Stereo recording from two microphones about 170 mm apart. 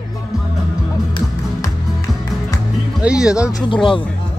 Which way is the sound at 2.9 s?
5° right (ahead or behind).